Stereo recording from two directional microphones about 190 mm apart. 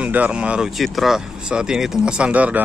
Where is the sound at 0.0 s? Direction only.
5° right (ahead or behind).